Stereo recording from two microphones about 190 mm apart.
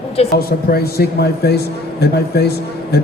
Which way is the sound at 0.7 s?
55° left (ahead or behind).